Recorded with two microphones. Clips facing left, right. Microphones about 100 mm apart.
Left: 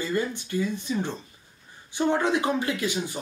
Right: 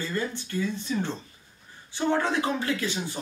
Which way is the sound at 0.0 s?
15° left (ahead or behind).